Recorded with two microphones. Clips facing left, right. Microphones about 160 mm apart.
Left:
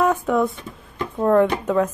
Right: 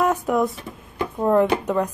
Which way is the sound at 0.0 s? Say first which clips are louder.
Left 1 dB; centre (ahead or behind).